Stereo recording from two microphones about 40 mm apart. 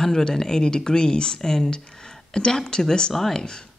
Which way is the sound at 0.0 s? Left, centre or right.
Centre.